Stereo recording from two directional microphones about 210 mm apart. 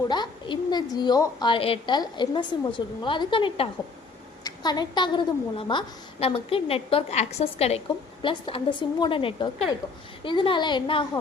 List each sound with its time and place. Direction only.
0.1 s a woman's voice: 20° left (ahead or behind)